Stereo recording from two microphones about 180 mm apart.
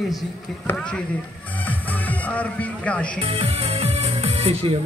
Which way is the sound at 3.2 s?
30° right (ahead or behind).